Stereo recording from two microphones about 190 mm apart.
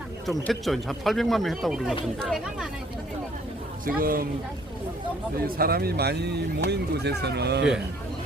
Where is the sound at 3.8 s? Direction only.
50° right (ahead or behind).